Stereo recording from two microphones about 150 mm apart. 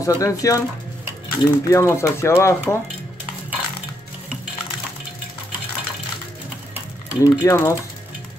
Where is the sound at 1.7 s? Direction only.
20° left (ahead or behind).